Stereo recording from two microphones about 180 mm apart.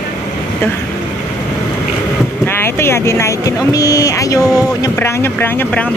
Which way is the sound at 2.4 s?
15° left (ahead or behind).